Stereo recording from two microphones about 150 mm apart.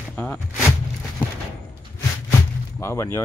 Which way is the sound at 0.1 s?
10° left (ahead or behind).